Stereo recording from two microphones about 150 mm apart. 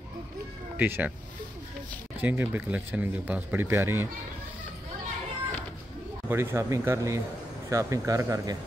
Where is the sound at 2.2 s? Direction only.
15° right (ahead or behind).